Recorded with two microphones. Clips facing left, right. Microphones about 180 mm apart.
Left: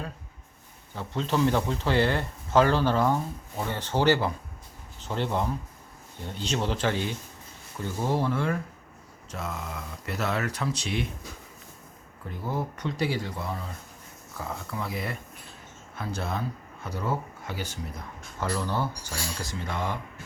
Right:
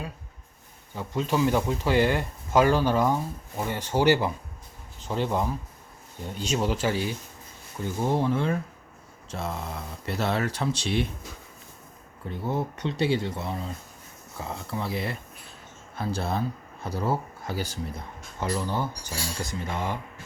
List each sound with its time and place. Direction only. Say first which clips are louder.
0.9 s speech: right 1 dB; 10° right (ahead or behind)
9.3 s speech: right 2 dB; 30° right (ahead or behind)
12.3 s speech: right 3 dB; 25° right (ahead or behind)
14.7 s speech: right 4 dB; 30° right (ahead or behind)
18.3 s speech: right 1 dB; 20° right (ahead or behind)